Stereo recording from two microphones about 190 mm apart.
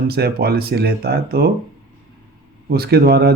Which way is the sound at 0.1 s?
55° right (ahead or behind).